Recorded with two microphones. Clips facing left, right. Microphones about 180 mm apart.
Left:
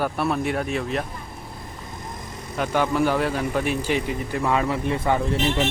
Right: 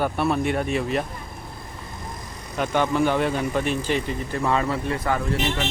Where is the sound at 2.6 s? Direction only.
5° left (ahead or behind); by 5.4 s 25° left (ahead or behind).